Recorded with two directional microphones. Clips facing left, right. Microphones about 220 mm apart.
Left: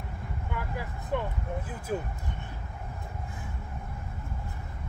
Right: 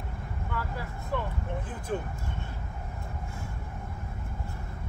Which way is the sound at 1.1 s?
15° left (ahead or behind).